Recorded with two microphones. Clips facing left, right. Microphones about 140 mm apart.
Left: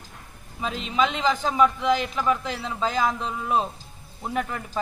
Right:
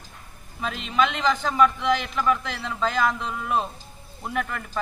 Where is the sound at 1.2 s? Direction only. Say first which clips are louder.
Even; 5° left (ahead or behind).